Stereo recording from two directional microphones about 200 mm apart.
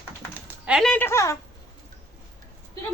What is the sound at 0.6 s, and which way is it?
Speech, centre (ahead or behind).